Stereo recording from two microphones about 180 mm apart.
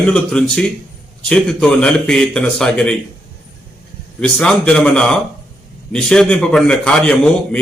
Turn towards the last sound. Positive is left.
turn(degrees=5)  # may be behind; listen again after turning